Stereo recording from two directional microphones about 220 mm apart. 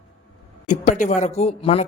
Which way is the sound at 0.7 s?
35° left (ahead or behind).